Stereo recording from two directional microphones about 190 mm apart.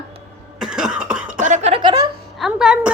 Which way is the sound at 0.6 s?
5° right (ahead or behind).